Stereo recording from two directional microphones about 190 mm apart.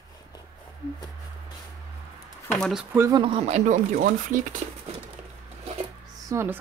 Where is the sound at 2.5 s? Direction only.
Centre (ahead or behind).